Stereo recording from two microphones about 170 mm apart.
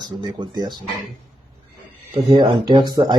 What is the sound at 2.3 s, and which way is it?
Speech, 25° right (ahead or behind).